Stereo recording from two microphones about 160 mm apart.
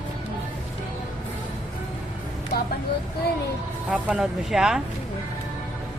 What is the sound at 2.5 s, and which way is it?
Speech, 75° left (ahead or behind).